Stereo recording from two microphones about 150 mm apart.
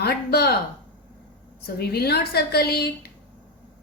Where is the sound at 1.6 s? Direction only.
90° left.